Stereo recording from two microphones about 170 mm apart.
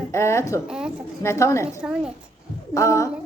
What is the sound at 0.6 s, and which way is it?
Speech, 5° right (ahead or behind).